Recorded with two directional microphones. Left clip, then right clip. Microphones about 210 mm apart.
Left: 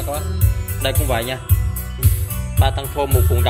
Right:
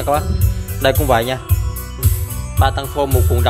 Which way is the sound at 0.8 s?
30° right (ahead or behind).